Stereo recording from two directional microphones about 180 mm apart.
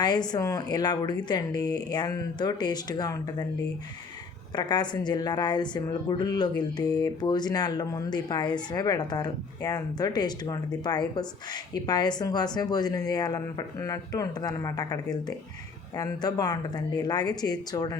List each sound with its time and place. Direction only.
0.3 s speech: 20° left (ahead or behind)
4.5 s speech: 25° left (ahead or behind)